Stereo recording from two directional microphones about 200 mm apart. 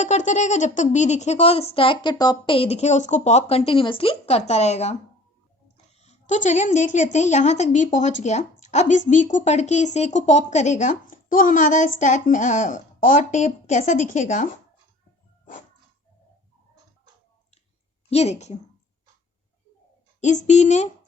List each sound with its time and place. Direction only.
0.0 s a woman's voice: 35° left (ahead or behind)
18.1 s speech: 30° left (ahead or behind)
20.2 s speech: 35° left (ahead or behind)